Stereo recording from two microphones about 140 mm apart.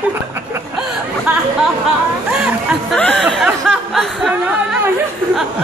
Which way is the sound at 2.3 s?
5° right (ahead or behind).